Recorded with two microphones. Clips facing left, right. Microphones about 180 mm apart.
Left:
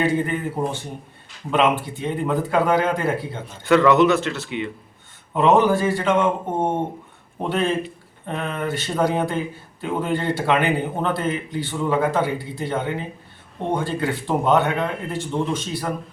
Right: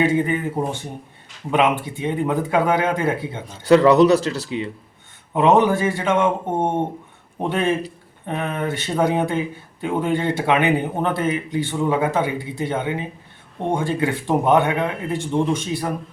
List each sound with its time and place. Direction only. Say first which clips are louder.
0.0 s a man's voice: right 2 dB; 20° right (ahead or behind)
2.0 s a man's voice: right 1 dB; 15° right (ahead or behind)
3.7 s speech: right 3 dB; 35° right (ahead or behind)
5.3 s a man's voice: right 1 dB; 20° right (ahead or behind)